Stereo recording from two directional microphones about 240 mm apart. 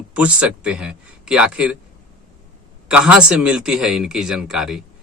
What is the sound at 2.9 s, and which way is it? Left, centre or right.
A man's voice, centre.